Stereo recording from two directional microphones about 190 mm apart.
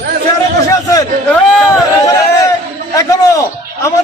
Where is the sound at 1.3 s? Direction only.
15° left (ahead or behind).